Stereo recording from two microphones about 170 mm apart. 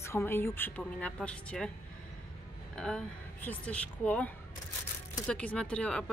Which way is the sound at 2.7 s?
5° left (ahead or behind).